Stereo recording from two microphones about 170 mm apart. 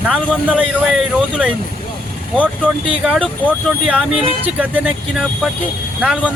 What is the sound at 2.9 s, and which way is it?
A man's voice, 5° right (ahead or behind).